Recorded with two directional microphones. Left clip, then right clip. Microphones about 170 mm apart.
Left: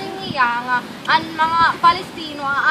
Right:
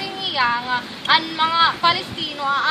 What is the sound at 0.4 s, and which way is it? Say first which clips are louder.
A woman's voice: left 3 dB; 20° right (ahead or behind).